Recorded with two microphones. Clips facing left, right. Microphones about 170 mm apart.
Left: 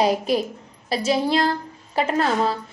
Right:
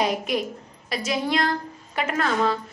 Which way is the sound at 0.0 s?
35° left (ahead or behind).